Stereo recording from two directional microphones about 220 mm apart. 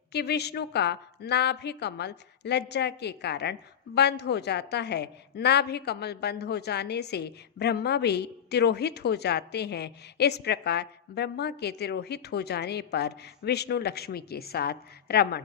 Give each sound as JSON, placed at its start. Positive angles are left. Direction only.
{"t": 0.1, "sound": "a woman's voice", "side_deg": 50}